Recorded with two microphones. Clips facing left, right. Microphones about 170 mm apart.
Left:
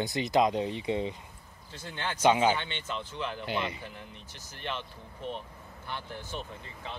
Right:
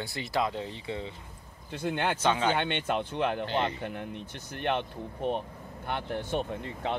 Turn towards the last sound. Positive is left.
turn(degrees=-65)  # may be behind; listen again after turning